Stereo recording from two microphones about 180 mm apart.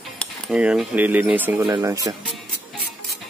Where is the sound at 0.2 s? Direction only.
5° right (ahead or behind).